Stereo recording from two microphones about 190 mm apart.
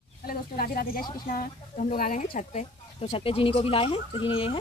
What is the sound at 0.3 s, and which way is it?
Speech, 50° left (ahead or behind).